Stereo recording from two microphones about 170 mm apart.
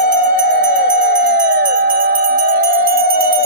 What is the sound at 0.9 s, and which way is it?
Music, 50° right (ahead or behind).